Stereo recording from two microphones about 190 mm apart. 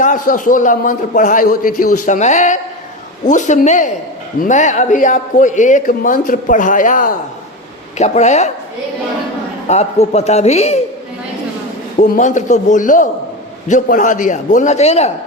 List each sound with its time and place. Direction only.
0.0 s a man's voice: 45° left (ahead or behind)
9.6 s a man's voice: 35° left (ahead or behind)
11.9 s a man's voice: 40° left (ahead or behind)